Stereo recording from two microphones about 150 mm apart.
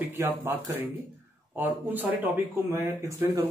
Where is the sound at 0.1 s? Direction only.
15° right (ahead or behind).